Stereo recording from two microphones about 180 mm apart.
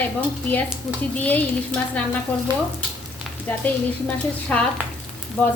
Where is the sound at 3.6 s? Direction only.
10° left (ahead or behind).